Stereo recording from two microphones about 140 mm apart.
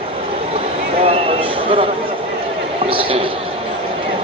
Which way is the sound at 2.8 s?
40° right (ahead or behind).